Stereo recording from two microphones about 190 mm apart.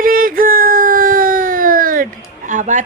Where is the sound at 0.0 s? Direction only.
50° right (ahead or behind).